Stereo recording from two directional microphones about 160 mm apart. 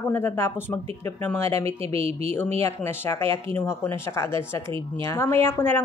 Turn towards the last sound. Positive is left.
turn(degrees=15)  # may be behind; listen again after turning